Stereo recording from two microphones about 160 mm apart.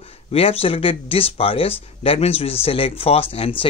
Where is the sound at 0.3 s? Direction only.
35° left (ahead or behind).